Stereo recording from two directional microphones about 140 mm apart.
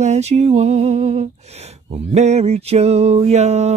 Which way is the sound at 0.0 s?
55° right (ahead or behind).